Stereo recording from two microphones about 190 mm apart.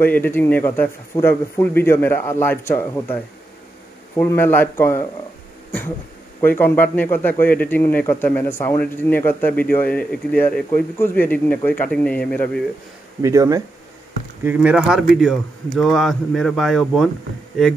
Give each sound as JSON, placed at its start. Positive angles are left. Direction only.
{"t": 0.0, "sound": "a man's voice", "side_deg": 10}
{"t": 4.2, "sound": "a man's voice", "side_deg": 10}
{"t": 5.7, "sound": "a sound", "side_deg": 10}
{"t": 6.4, "sound": "a man's voice", "side_deg": 10}
{"t": 13.2, "sound": "speech", "side_deg": -15}